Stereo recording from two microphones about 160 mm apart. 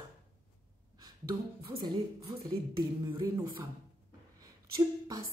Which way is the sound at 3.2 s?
20° right (ahead or behind).